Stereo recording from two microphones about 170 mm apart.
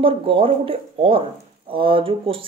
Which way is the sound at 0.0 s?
30° right (ahead or behind).